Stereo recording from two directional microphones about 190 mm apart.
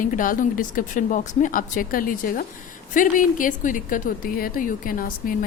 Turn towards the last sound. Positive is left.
turn(degrees=45)  # may be behind; listen again after turning